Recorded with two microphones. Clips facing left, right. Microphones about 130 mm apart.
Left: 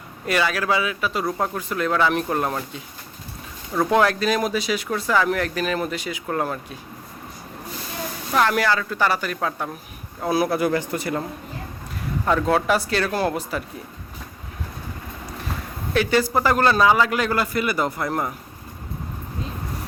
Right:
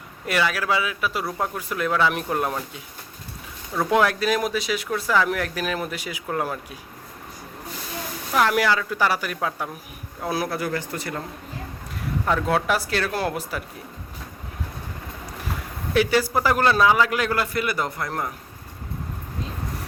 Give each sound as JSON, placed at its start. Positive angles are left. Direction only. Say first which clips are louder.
{"t": 0.3, "sound": "speech", "louder": "left 1 dB", "side_deg": 0}
{"t": 3.8, "sound": "speech", "louder": "left 1 dB", "side_deg": -5}
{"t": 8.3, "sound": "speech", "louder": "even", "side_deg": -5}
{"t": 10.2, "sound": "speech", "louder": "left 5 dB", "side_deg": 5}
{"t": 10.5, "sound": "speech", "louder": "left 6 dB", "side_deg": 20}
{"t": 12.2, "sound": "speech", "louder": "left 3 dB", "side_deg": 0}
{"t": 16.0, "sound": "speech", "louder": "even", "side_deg": -5}